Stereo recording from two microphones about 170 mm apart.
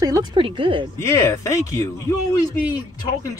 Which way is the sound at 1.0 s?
15° left (ahead or behind).